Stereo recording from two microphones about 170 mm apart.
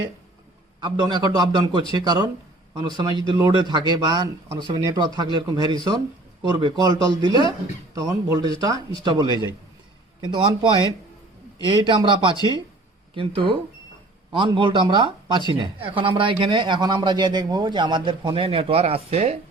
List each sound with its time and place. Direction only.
0.8 s speech: 25° right (ahead or behind)